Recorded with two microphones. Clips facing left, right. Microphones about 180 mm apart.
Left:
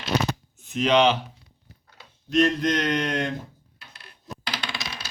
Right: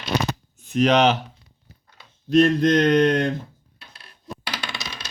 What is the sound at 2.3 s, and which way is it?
Speech, 35° right (ahead or behind).